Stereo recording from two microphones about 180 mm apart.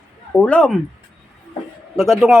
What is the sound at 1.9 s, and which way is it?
Speech, centre (ahead or behind).